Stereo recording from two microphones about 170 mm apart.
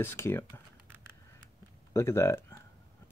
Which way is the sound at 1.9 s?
15° left (ahead or behind).